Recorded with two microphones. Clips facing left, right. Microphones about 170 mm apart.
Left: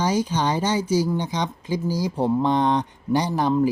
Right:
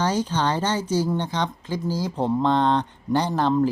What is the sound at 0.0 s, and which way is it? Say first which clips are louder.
Speech: left 1 dB; 10° left (ahead or behind).